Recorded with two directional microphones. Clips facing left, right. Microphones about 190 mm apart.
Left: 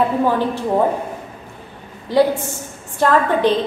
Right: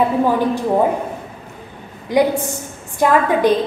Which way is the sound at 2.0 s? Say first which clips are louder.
Even; 15° right (ahead or behind).